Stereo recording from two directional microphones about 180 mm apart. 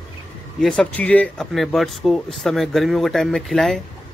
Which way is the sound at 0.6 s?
5° left (ahead or behind).